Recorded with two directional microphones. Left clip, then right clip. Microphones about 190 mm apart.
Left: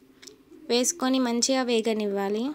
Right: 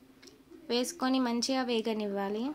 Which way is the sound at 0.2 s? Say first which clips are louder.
Left 6 dB; 20° left (ahead or behind).